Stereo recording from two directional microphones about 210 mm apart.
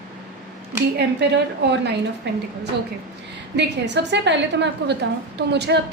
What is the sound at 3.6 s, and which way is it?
A woman's voice, 55° right (ahead or behind).